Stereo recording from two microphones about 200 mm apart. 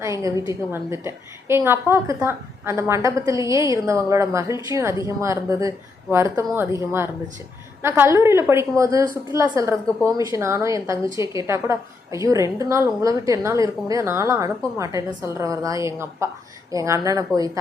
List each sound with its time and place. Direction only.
0.0 s a woman's voice: 15° right (ahead or behind)
7.8 s a woman's voice: 10° right (ahead or behind)